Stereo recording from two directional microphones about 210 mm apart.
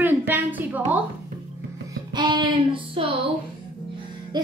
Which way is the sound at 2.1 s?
20° right (ahead or behind).